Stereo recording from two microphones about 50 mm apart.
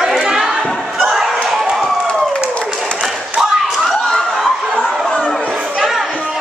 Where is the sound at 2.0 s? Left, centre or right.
Centre.